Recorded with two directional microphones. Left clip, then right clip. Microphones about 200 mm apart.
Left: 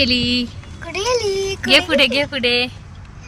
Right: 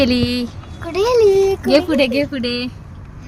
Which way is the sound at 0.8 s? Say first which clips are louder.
Right 6 dB; 45° left (ahead or behind).